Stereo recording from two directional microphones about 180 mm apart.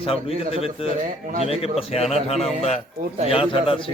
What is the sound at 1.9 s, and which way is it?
A man's voice, 35° left (ahead or behind).